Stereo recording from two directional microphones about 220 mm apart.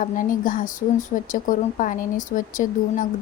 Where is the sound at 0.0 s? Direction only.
35° left (ahead or behind).